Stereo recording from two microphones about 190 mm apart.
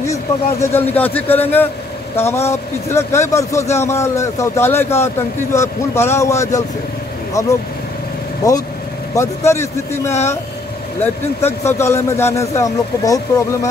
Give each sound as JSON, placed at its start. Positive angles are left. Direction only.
{"t": 0.0, "sound": "speech", "side_deg": 15}
{"t": 9.1, "sound": "speech", "side_deg": 15}
{"t": 11.4, "sound": "speech", "side_deg": 15}